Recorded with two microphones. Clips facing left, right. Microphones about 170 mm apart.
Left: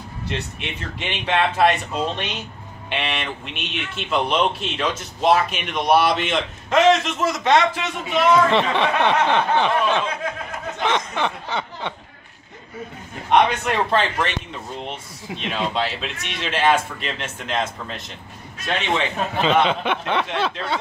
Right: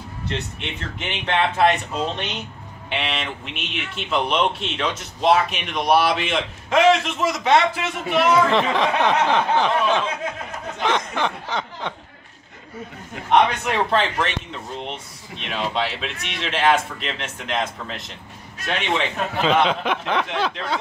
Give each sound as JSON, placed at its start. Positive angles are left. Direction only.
{"t": 0.3, "sound": "speech", "side_deg": 5}
{"t": 13.3, "sound": "speech", "side_deg": 0}